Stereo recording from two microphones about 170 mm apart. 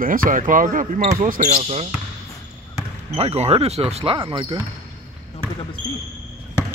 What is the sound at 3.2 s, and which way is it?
Speech, 40° right (ahead or behind).